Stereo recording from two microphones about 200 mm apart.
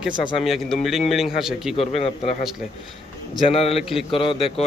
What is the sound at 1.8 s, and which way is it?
Speech, 30° left (ahead or behind).